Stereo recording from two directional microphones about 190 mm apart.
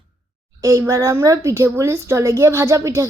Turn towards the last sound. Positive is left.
turn(degrees=-15)  # may be behind; listen again after turning